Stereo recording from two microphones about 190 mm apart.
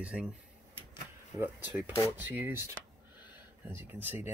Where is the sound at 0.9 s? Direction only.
10° right (ahead or behind).